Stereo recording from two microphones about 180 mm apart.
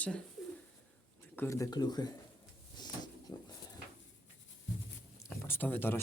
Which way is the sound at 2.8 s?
25° left (ahead or behind).